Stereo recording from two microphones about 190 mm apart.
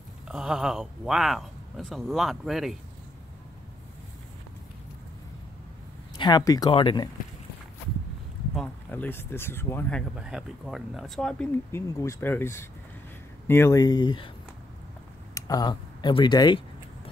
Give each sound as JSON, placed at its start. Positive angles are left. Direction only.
{"t": 0.3, "sound": "speech", "side_deg": -5}
{"t": 6.1, "sound": "speech", "side_deg": 20}
{"t": 8.5, "sound": "speech", "side_deg": 10}
{"t": 10.1, "sound": "speech", "side_deg": -5}
{"t": 11.7, "sound": "speech", "side_deg": 15}
{"t": 15.3, "sound": "a sound", "side_deg": 20}